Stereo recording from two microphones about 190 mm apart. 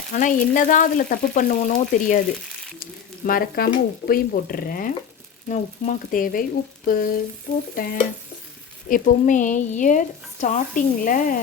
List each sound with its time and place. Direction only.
0.1 s speech: 45° left (ahead or behind)
3.2 s a woman's voice: 50° left (ahead or behind)